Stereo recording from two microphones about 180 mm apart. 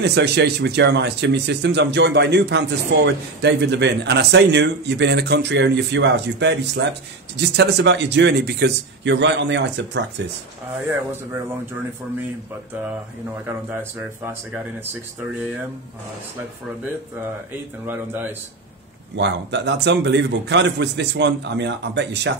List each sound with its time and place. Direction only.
0.0 s speech: 70° right (ahead or behind)
13.5 s speech: 10° right (ahead or behind)
17.8 s speech: 10° right (ahead or behind)
19.1 s speech: 75° right (ahead or behind)